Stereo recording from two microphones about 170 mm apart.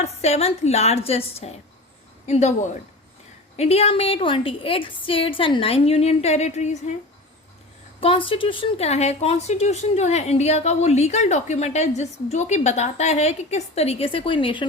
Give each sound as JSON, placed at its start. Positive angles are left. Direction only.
{"t": 0.0, "sound": "a woman's voice", "side_deg": 40}
{"t": 3.6, "sound": "a woman's voice", "side_deg": 35}
{"t": 8.0, "sound": "a woman's voice", "side_deg": 30}